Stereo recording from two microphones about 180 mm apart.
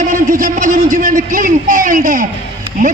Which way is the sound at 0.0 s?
50° right (ahead or behind).